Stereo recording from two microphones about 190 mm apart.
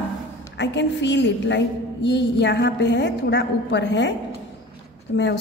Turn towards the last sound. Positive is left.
turn(degrees=65)  # may be behind; listen again after turning